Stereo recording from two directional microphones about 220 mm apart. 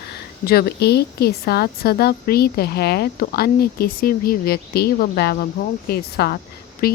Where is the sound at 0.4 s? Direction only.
45° left (ahead or behind).